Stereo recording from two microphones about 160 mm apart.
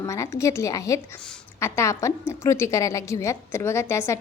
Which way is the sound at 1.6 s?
15° left (ahead or behind).